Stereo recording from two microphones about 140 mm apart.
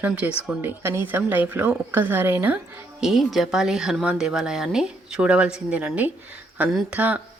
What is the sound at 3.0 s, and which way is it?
A woman's voice, centre (ahead or behind).